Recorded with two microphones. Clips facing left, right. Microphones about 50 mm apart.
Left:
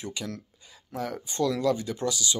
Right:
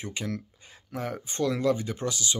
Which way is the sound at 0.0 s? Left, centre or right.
Right.